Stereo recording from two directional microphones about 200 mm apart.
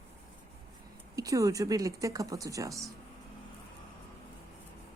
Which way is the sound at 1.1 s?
15° right (ahead or behind).